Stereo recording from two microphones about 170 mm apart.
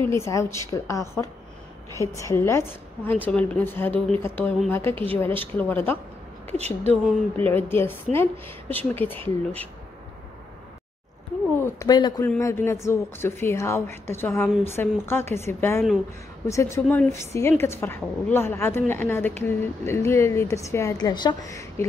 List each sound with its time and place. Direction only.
0.1 s a woman's voice: 15° left (ahead or behind)
6.6 s speech: 40° right (ahead or behind)
7.3 s a woman's voice: 10° left (ahead or behind)
11.5 s a woman's voice: 15° left (ahead or behind)